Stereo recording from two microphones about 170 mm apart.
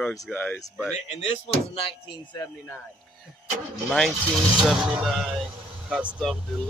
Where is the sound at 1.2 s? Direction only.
35° left (ahead or behind).